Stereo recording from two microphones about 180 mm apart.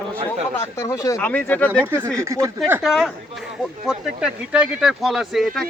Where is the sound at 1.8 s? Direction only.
10° right (ahead or behind).